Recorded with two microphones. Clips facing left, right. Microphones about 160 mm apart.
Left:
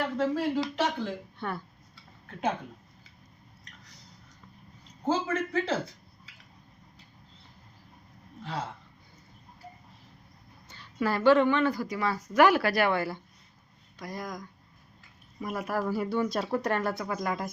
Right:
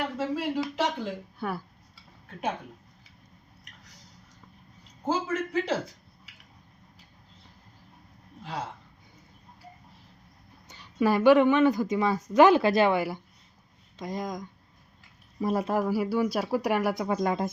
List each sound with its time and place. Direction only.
0.2 s a woman's voice: 5° right (ahead or behind)
5.0 s a woman's voice: 10° right (ahead or behind)
10.7 s a woman's voice: 15° right (ahead or behind)
15.4 s speech: 30° right (ahead or behind)
15.8 s a woman's voice: 5° right (ahead or behind); by 17.5 s 25° right (ahead or behind)